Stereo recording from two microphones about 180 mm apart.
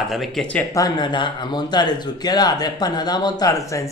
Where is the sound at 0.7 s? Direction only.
20° left (ahead or behind).